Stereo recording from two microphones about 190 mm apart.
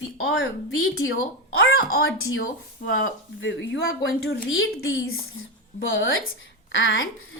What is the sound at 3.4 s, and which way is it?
A woman's voice, 75° left (ahead or behind).